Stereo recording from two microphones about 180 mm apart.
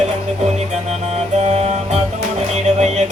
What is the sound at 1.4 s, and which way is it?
Music, 35° right (ahead or behind).